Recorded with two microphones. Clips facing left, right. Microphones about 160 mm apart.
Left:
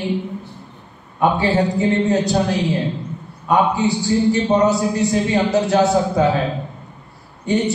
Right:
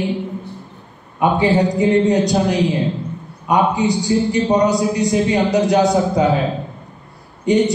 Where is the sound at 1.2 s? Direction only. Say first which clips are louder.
Right 2 dB; 15° right (ahead or behind).